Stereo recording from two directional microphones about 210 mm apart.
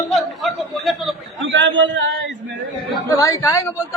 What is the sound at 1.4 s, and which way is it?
Speech, 60° right (ahead or behind).